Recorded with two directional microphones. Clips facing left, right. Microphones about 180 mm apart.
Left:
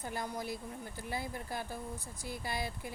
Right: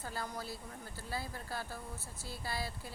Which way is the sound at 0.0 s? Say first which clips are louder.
Left 3 dB; 15° left (ahead or behind).